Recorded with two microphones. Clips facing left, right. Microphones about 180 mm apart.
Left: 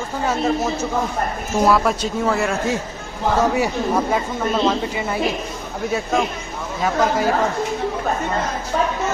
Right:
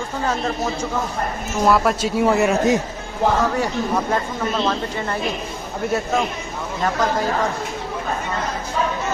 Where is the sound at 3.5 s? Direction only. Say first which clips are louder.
Left 2 dB; 5° left (ahead or behind).